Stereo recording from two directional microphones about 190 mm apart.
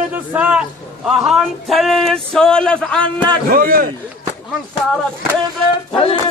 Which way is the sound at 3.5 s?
50° right (ahead or behind).